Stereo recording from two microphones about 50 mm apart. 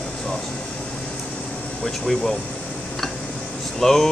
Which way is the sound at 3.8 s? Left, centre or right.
Centre.